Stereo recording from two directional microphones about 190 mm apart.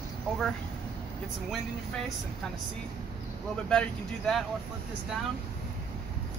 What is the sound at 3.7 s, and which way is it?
Speech, 5° left (ahead or behind).